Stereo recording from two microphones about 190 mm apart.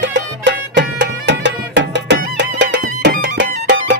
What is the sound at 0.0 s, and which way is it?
Music, 70° right (ahead or behind).